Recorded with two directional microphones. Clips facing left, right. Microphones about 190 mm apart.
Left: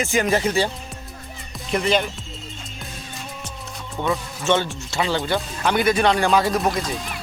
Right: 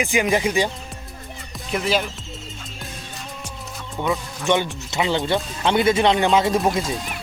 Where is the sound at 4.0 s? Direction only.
Centre (ahead or behind).